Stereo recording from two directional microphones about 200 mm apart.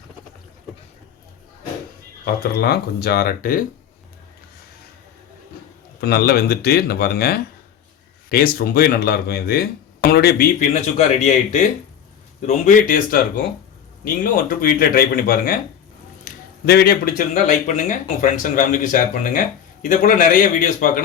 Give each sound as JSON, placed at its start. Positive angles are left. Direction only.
{"t": 2.2, "sound": "speech", "side_deg": 50}
{"t": 6.0, "sound": "speech", "side_deg": 50}